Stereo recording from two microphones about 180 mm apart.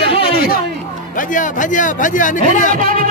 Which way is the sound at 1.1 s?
45° left (ahead or behind).